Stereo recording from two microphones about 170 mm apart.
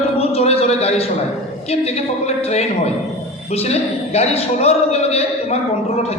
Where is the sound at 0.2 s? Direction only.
35° left (ahead or behind).